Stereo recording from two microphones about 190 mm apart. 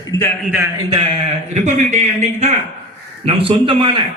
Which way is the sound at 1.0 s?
35° right (ahead or behind).